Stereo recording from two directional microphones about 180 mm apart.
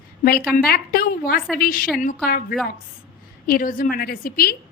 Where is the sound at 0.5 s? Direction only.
55° left (ahead or behind).